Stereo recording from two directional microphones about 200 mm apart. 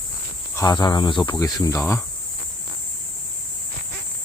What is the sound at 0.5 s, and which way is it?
Speech, 20° left (ahead or behind).